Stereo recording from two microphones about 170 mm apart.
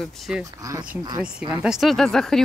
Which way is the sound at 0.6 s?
20° right (ahead or behind).